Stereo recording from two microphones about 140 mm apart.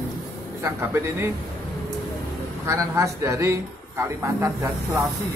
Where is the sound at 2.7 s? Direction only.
20° right (ahead or behind).